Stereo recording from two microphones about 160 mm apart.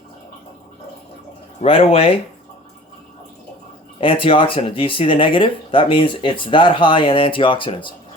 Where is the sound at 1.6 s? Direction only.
35° left (ahead or behind).